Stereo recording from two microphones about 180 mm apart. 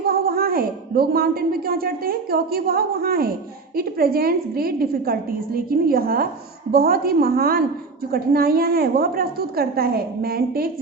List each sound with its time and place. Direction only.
0.0 s a woman's voice: 55° right (ahead or behind)